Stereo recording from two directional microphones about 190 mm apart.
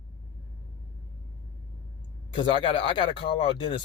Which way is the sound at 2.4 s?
25° left (ahead or behind).